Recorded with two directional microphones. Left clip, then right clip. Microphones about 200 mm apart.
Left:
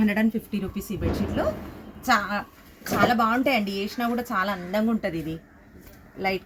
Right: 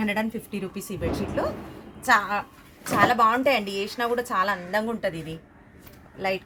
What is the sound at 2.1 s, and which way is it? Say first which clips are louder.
A woman's voice: right 2 dB; 45° right (ahead or behind).